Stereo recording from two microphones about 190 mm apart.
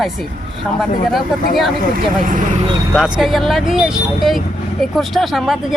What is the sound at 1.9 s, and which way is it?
Speech, 45° right (ahead or behind).